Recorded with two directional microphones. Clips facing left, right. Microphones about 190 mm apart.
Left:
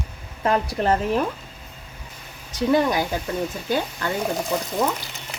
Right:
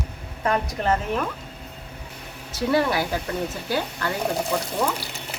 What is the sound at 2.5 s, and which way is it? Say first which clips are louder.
Speech: left 2 dB; 20° left (ahead or behind).